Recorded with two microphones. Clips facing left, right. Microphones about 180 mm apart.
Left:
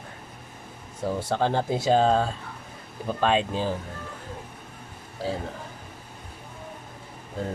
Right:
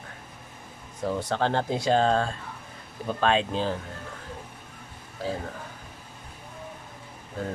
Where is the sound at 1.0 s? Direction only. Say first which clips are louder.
Left 1 dB; 5° left (ahead or behind).